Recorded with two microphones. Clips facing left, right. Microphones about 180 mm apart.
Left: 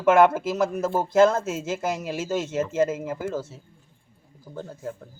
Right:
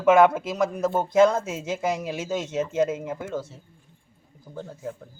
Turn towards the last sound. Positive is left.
turn(degrees=0)  # may be behind; listen again after turning